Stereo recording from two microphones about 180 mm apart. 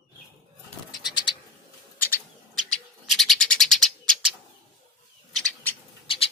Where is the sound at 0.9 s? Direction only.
25° left (ahead or behind).